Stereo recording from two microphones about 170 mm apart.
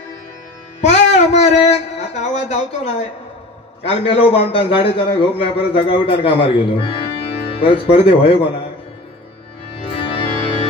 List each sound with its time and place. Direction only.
0.7 s music: 45° left (ahead or behind)
2.4 s a man's voice: 40° left (ahead or behind)
9.8 s music: 30° left (ahead or behind)